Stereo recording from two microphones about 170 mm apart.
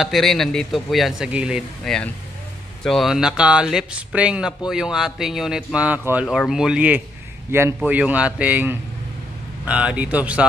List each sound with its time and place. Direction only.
0.0 s speech: centre (ahead or behind)